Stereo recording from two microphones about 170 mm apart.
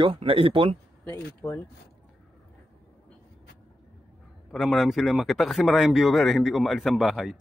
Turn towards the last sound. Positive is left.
turn(degrees=0)  # may be behind; listen again after turning